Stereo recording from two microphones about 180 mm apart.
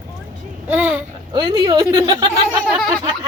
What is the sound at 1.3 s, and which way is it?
Speech, 25° right (ahead or behind).